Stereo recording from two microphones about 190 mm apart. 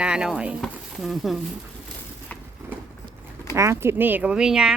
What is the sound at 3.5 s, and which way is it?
Speech, 15° right (ahead or behind).